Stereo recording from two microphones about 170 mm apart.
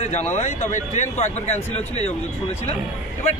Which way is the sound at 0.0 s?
40° left (ahead or behind).